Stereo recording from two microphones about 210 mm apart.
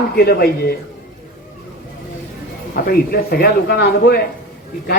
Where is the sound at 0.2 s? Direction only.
45° left (ahead or behind).